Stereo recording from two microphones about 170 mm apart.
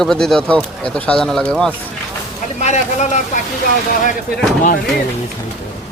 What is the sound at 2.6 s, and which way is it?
Speech, 40° left (ahead or behind).